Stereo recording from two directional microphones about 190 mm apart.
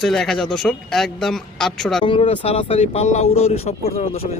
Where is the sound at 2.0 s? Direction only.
30° left (ahead or behind).